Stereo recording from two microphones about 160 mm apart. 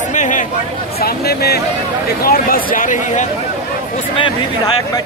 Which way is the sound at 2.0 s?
70° left (ahead or behind).